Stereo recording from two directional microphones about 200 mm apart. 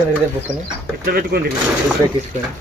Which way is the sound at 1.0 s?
50° right (ahead or behind).